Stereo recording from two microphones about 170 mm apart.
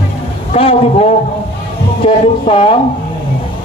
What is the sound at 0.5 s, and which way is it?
A man's voice, 35° left (ahead or behind).